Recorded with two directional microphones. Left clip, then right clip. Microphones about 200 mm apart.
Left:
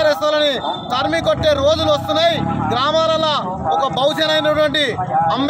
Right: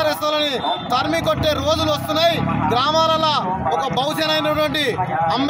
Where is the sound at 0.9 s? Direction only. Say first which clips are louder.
Left 3 dB; 10° left (ahead or behind).